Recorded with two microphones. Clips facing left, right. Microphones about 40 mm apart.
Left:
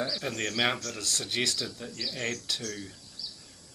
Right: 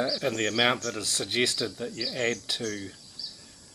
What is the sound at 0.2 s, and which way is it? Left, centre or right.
Speech, centre.